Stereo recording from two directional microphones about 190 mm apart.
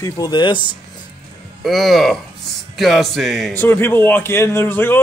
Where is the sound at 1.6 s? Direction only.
Centre (ahead or behind).